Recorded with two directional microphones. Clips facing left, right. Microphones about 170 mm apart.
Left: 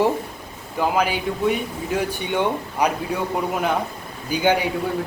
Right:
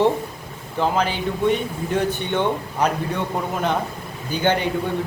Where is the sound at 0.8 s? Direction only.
10° left (ahead or behind).